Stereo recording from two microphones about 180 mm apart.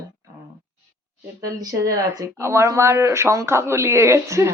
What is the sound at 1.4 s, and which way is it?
A woman's voice, 20° right (ahead or behind).